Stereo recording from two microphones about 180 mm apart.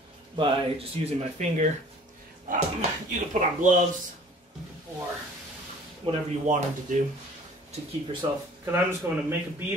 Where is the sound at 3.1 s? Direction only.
45° right (ahead or behind).